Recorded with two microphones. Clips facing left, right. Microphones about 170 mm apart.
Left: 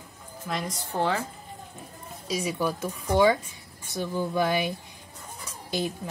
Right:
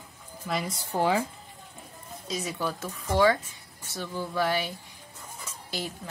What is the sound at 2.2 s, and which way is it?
A woman's voice, 10° left (ahead or behind).